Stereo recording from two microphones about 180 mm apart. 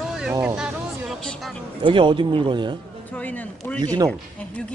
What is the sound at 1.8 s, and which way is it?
Speech, 30° right (ahead or behind).